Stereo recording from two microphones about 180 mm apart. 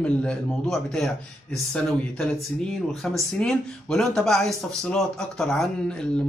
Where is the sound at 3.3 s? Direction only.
5° left (ahead or behind).